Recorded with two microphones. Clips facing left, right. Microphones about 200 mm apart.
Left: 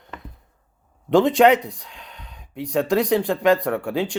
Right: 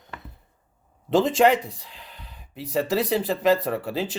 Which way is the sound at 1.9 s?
85° left.